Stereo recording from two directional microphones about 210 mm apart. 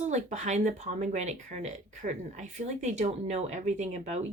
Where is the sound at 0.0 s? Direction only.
35° right (ahead or behind).